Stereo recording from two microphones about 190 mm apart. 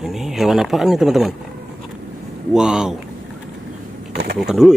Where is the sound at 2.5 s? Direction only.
5° right (ahead or behind).